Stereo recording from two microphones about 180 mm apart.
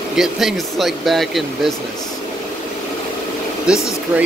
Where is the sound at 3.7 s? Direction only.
5° right (ahead or behind).